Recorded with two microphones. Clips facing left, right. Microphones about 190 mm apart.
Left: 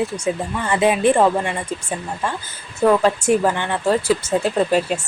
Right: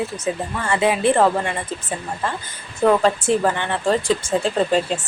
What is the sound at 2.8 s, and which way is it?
A woman's voice, 5° left (ahead or behind).